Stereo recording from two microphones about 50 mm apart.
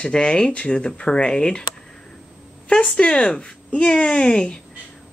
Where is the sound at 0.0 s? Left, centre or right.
Centre.